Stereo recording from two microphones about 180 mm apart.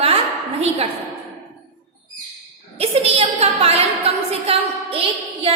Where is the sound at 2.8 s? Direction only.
35° right (ahead or behind).